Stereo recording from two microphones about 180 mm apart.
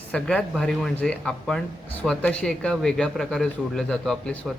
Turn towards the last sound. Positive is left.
turn(degrees=5)  # may be behind; listen again after turning